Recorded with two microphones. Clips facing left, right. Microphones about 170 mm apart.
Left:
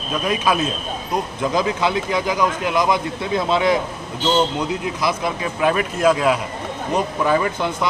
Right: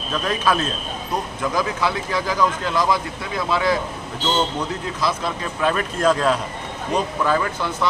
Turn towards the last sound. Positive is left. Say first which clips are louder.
# left 2 dB
turn(degrees=20)  # may be behind; listen again after turning